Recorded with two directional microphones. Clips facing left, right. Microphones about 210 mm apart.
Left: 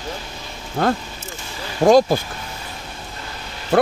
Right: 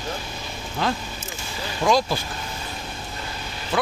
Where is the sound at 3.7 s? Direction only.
65° left (ahead or behind).